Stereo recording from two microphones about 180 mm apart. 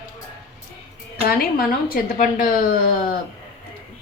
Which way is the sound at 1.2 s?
55° left (ahead or behind).